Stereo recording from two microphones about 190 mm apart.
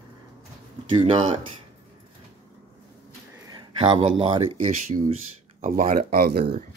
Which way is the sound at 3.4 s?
25° right (ahead or behind).